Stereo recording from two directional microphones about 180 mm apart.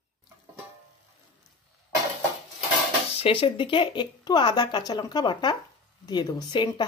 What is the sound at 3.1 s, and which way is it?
Speech, 30° left (ahead or behind).